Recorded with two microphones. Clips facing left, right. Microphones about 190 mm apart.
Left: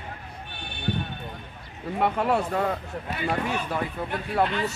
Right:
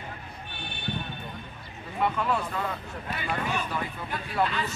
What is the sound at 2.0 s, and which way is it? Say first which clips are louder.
Speech: left 3 dB; 60° left (ahead or behind).